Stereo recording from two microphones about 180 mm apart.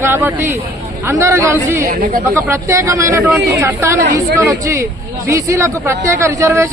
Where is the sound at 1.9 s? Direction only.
50° right (ahead or behind).